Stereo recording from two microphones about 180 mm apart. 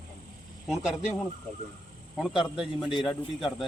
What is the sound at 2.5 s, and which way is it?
Speech, 5° right (ahead or behind).